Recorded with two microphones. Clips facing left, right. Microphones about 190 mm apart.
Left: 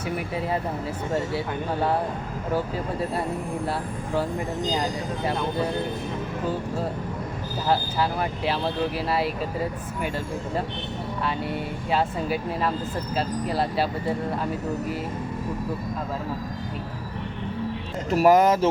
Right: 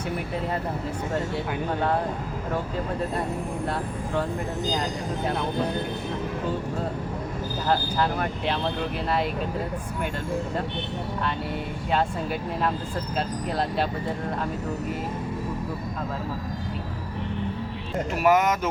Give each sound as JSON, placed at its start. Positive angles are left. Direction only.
{"t": 7.7, "sound": "speech", "side_deg": 5}
{"t": 11.9, "sound": "speech", "side_deg": 5}
{"t": 18.1, "sound": "speech", "side_deg": 35}